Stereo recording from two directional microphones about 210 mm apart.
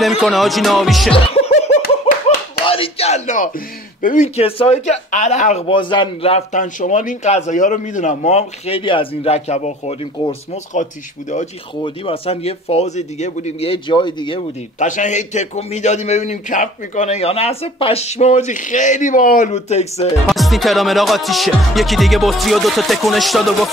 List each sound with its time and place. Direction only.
0.2 s music: centre (ahead or behind)
1.1 s laughter: 30° left (ahead or behind)
1.8 s a man's voice: 40° left (ahead or behind); by 14.4 s 20° left (ahead or behind)
14.8 s speech: 35° left (ahead or behind)
20.2 s music: centre (ahead or behind)